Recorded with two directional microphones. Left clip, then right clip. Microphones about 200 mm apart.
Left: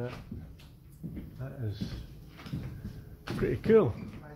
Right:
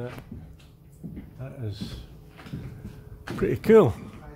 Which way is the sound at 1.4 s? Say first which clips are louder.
Right 4 dB; 20° right (ahead or behind).